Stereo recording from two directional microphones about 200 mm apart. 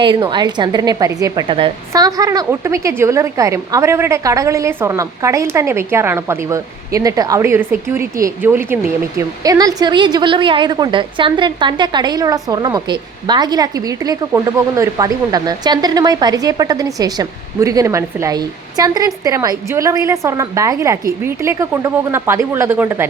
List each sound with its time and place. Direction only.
0.0 s a woman's voice: 25° right (ahead or behind)